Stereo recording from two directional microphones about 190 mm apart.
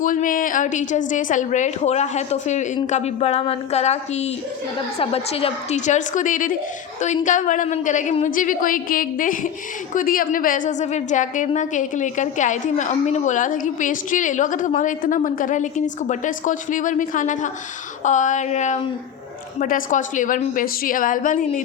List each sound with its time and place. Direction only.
0.0 s a woman's voice: 45° left (ahead or behind)